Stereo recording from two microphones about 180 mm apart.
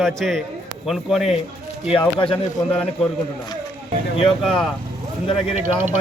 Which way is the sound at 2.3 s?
5° left (ahead or behind).